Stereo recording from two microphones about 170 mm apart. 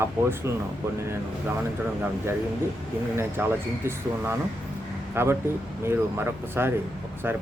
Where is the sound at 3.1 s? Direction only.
10° right (ahead or behind).